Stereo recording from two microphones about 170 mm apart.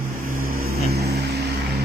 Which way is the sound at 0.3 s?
60° right (ahead or behind).